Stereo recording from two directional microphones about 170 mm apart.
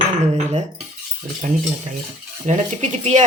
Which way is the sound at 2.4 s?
45° right (ahead or behind).